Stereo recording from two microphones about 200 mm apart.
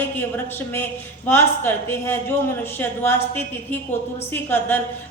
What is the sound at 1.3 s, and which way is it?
A woman's voice, 10° left (ahead or behind).